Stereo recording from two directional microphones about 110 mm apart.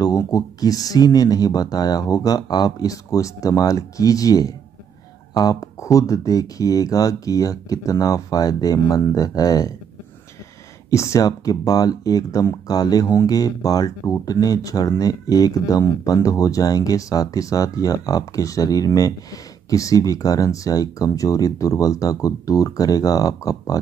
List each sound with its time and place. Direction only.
0.3 s speech: 35° left (ahead or behind)
10.9 s speech: 25° left (ahead or behind)